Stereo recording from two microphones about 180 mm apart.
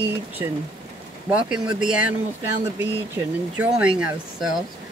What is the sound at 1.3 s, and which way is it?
Speech, 5° right (ahead or behind).